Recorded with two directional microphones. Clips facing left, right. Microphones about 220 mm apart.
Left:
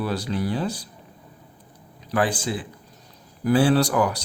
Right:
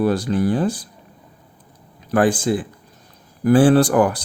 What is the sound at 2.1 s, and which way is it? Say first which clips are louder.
Speech: right 7 dB; 50° right (ahead or behind).